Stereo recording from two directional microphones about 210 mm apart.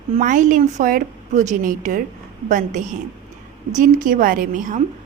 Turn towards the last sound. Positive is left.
turn(degrees=-40)  # may be behind; listen again after turning